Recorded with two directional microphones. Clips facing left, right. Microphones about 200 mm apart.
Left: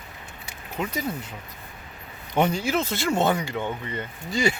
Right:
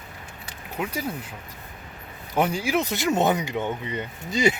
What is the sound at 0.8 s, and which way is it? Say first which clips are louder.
Speech: left 1 dB; 10° right (ahead or behind).